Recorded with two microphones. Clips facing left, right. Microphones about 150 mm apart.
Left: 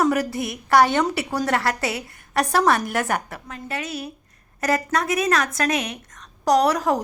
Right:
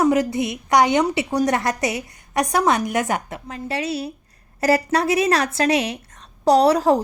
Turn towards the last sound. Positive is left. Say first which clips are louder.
# right 4 dB
turn(degrees=-30)  # may be behind; listen again after turning